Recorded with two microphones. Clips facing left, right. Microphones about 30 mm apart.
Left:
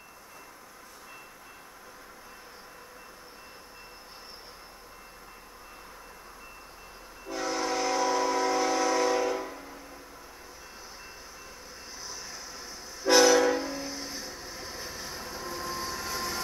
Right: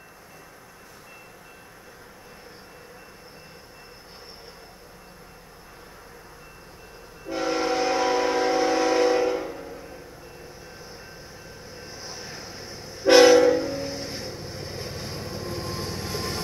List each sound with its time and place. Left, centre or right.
7.2 s train: right
11.8 s train: right